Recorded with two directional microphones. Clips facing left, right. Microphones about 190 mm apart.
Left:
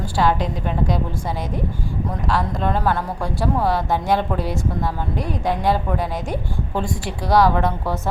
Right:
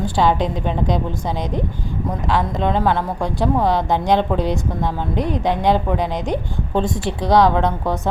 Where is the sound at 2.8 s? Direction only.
15° right (ahead or behind).